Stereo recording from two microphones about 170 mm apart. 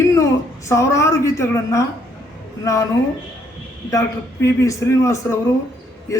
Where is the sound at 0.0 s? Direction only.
15° left (ahead or behind).